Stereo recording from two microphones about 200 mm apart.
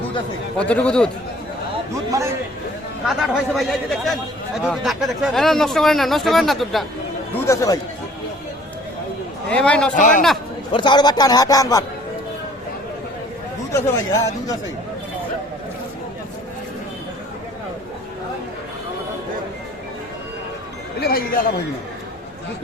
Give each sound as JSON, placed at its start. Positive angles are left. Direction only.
{"t": 0.7, "sound": "a man's voice", "side_deg": 5}
{"t": 2.0, "sound": "a man's voice", "side_deg": -15}
{"t": 3.2, "sound": "a man's voice", "side_deg": 0}
{"t": 7.3, "sound": "speech", "side_deg": 15}
{"t": 9.5, "sound": "a man's voice", "side_deg": 5}
{"t": 9.9, "sound": "a man's voice", "side_deg": 40}
{"t": 10.7, "sound": "a man's voice", "side_deg": 25}
{"t": 13.7, "sound": "speech", "side_deg": 15}
{"t": 21.0, "sound": "speech", "side_deg": 50}